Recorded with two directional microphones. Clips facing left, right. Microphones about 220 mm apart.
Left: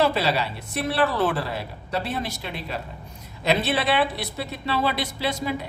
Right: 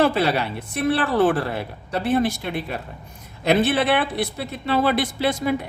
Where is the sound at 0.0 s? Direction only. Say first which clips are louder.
Right 3 dB; 55° right (ahead or behind).